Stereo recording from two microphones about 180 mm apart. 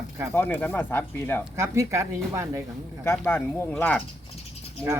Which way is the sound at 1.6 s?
15° right (ahead or behind).